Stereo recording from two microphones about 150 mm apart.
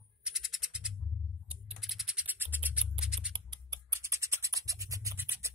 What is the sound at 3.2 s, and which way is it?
Scissors, 25° right (ahead or behind).